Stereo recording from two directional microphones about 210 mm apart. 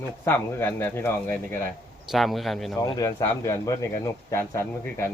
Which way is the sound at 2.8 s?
15° left (ahead or behind).